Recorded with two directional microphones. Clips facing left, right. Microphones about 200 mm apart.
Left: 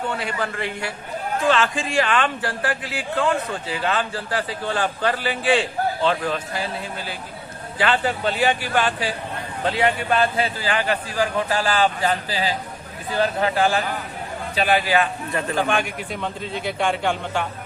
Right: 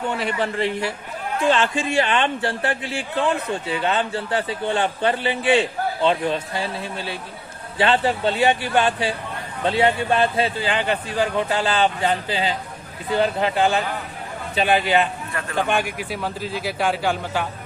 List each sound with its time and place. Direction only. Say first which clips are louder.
0.3 s speech: right 4 dB; 25° right (ahead or behind)
15.8 s a man's voice: right 1 dB; 5° right (ahead or behind)